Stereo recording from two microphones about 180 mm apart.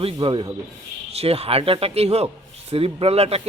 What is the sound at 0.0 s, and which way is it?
A man's voice, 30° right (ahead or behind).